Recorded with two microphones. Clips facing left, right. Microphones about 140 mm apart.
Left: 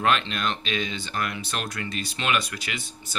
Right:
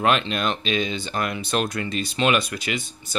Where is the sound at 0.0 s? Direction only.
20° right (ahead or behind).